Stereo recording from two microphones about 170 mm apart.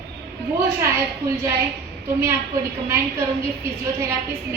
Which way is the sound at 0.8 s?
15° right (ahead or behind).